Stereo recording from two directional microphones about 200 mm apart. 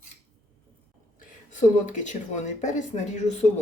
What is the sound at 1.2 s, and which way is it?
Speech, 40° left (ahead or behind).